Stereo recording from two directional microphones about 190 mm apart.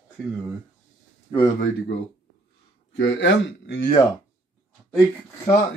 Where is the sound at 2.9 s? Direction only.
70° left (ahead or behind).